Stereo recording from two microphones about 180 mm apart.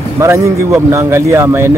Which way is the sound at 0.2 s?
15° right (ahead or behind).